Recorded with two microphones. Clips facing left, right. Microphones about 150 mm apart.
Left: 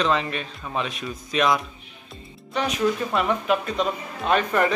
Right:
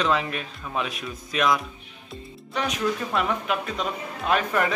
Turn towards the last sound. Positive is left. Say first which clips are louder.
# left 2 dB
turn(degrees=0)  # may be behind; listen again after turning